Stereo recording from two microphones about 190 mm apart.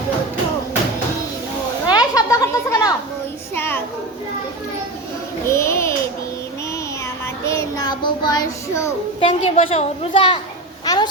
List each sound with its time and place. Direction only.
1.9 s a sound: 20° left (ahead or behind)
3.5 s music: 10° left (ahead or behind)
5.5 s a child's voice: 15° left (ahead or behind)
7.4 s child singing: 15° left (ahead or behind)
9.2 s a woman's voice: 30° left (ahead or behind)